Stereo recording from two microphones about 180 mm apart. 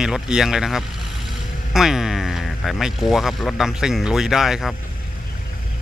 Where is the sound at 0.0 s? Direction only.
5° right (ahead or behind).